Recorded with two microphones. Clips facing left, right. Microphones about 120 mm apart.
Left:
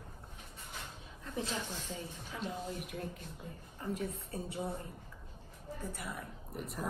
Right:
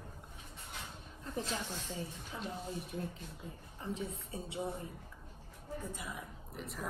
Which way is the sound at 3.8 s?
25° right (ahead or behind).